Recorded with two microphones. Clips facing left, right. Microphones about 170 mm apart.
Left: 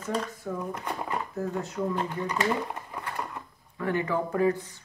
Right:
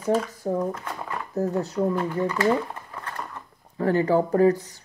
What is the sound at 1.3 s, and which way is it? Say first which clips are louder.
Speech: right 6 dB; 40° right (ahead or behind).